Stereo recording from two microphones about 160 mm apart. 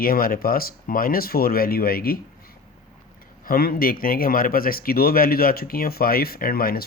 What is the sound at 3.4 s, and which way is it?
Speech, 65° left (ahead or behind).